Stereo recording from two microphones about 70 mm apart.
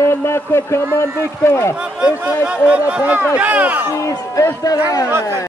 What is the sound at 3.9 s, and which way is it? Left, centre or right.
Speech, left.